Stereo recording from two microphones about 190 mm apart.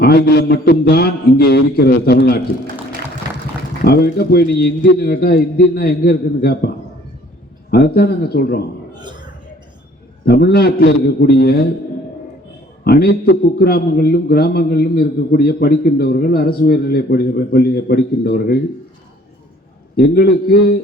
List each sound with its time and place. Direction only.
0.0 s a man's voice: 55° left (ahead or behind)
3.8 s a man's voice: 55° left (ahead or behind)
7.7 s a man's voice: 55° left (ahead or behind)
8.9 s a sound: 25° right (ahead or behind)
10.2 s a man's voice: 55° left (ahead or behind)
12.8 s a man's voice: 55° left (ahead or behind)
20.0 s a man's voice: 55° left (ahead or behind)